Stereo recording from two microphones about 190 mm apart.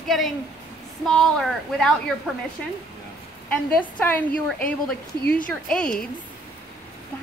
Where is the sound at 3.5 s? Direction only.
10° left (ahead or behind).